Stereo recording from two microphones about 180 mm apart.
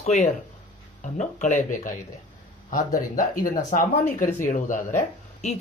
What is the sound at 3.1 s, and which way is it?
Speech, 50° left (ahead or behind).